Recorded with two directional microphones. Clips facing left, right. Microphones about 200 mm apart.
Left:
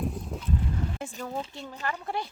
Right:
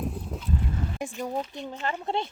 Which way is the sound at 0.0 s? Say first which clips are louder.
Even; centre (ahead or behind).